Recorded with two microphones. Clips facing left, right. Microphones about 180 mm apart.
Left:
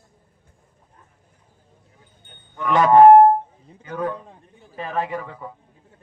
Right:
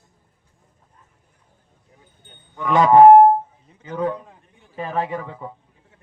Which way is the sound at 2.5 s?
15° right (ahead or behind).